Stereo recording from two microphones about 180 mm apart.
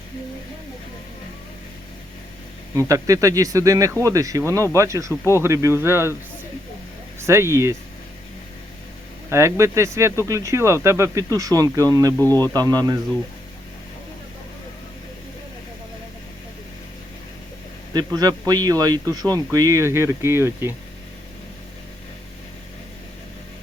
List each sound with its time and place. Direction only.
2.7 s a man's voice: 20° right (ahead or behind)
7.2 s speech: 15° right (ahead or behind)
9.3 s speech: 15° right (ahead or behind)
12.2 s speech: 15° left (ahead or behind)
12.5 s a man's voice: 20° right (ahead or behind)
17.9 s a man's voice: 20° right (ahead or behind)